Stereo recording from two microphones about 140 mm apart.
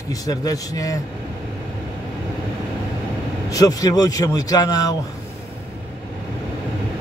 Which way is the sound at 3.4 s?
25° left (ahead or behind).